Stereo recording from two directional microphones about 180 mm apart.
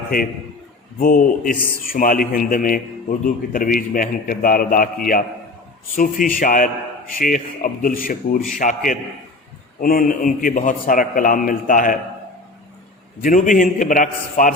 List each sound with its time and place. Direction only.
0.9 s a man's voice: 55° left (ahead or behind)
13.2 s a man's voice: 45° left (ahead or behind)